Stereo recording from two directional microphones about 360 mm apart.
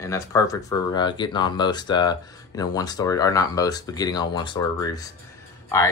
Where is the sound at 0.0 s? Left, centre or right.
Centre.